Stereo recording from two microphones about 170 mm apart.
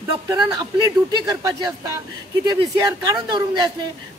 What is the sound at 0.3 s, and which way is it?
A woman's voice, 25° right (ahead or behind).